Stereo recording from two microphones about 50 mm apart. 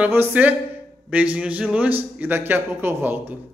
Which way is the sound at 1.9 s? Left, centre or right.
Right.